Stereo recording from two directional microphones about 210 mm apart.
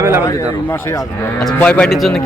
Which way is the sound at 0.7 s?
15° left (ahead or behind).